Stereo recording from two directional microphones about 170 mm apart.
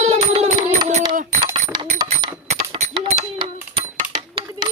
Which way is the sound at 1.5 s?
25° right (ahead or behind).